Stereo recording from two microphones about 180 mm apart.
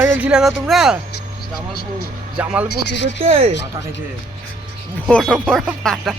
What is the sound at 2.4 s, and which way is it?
Speech, 10° right (ahead or behind).